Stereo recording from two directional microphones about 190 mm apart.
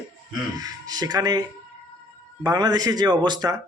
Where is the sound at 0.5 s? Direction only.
20° right (ahead or behind).